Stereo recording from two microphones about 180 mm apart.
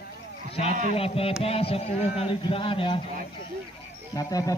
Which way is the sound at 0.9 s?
35° left (ahead or behind).